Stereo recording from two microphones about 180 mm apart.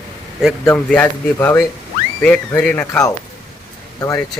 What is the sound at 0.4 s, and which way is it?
Speech, 5° left (ahead or behind).